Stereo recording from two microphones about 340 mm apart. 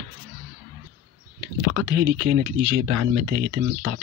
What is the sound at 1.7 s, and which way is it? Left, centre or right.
Speech, right.